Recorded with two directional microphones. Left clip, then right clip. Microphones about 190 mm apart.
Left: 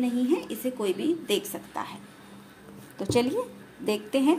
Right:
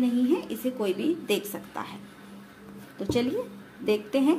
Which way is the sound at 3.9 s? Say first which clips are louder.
Right 1 dB; 15° left (ahead or behind).